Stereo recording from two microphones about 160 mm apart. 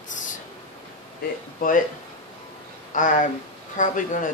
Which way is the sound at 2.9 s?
55° left (ahead or behind).